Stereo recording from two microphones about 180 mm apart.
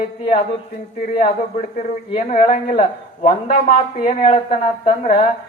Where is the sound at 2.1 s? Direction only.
35° left (ahead or behind).